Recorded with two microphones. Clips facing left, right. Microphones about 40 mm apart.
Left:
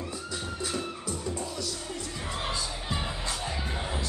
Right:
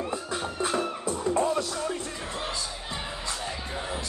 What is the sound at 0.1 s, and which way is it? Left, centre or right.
Music, right.